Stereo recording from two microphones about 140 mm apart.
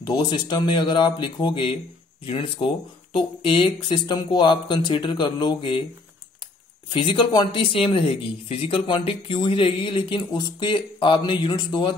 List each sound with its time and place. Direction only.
0.0 s speech: 30° left (ahead or behind)
6.9 s speech: 35° left (ahead or behind)